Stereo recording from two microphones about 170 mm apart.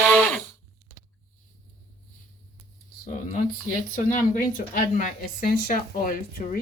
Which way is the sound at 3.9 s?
50° left (ahead or behind).